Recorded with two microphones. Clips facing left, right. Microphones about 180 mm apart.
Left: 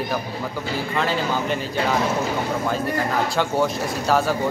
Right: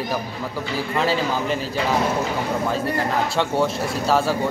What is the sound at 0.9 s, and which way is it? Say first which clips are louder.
Speech: right 2 dB; centre (ahead or behind).